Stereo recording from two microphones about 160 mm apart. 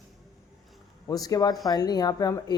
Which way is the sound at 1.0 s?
20° left (ahead or behind).